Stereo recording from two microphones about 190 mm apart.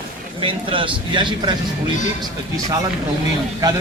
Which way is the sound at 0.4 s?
25° right (ahead or behind).